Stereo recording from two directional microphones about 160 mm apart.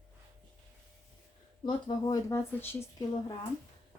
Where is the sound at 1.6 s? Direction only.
25° left (ahead or behind).